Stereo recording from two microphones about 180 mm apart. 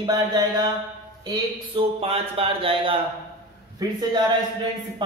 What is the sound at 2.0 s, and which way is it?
Speech, 35° right (ahead or behind).